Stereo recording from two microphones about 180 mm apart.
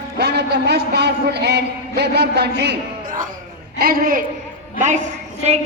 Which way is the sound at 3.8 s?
50° right (ahead or behind).